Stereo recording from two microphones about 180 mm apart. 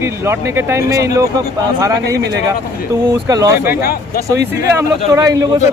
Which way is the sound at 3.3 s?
15° right (ahead or behind).